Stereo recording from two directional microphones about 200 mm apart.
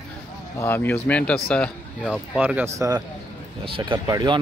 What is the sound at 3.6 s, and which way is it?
Speech, 25° right (ahead or behind).